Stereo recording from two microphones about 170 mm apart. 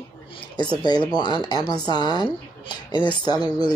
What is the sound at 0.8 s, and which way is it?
Speech, 25° left (ahead or behind).